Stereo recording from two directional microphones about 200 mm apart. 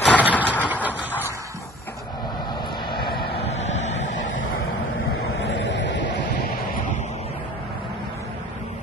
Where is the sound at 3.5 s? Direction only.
35° left (ahead or behind).